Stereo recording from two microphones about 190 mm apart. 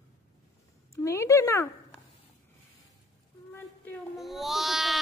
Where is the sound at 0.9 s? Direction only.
15° left (ahead or behind).